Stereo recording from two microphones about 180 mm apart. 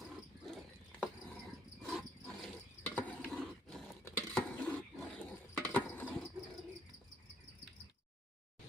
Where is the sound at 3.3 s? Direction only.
Centre (ahead or behind).